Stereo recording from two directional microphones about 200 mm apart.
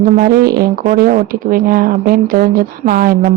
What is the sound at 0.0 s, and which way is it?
Speech, 45° right (ahead or behind).